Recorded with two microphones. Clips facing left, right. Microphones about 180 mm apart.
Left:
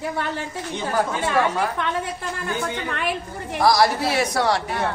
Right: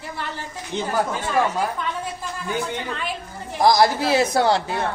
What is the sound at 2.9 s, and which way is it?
Speech, 65° left (ahead or behind).